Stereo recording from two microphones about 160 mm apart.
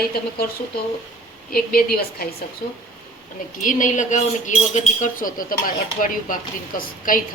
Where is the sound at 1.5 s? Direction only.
70° left (ahead or behind).